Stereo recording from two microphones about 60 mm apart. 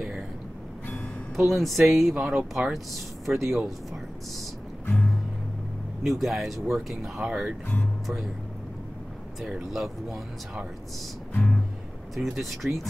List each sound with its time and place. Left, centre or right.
1.3 s speech: centre
2.1 s speech: centre
2.5 s speech: centre
6.0 s speech: centre
9.4 s speech: centre
11.3 s music: left
12.2 s speech: centre